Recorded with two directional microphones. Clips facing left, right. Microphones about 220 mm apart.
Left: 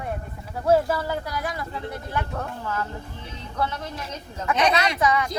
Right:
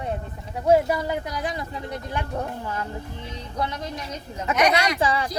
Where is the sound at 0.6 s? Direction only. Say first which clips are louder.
Right 1 dB; 15° right (ahead or behind).